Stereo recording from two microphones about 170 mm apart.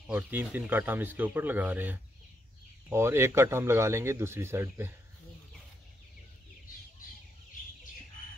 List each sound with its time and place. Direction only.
0.0 s speech: 10° right (ahead or behind)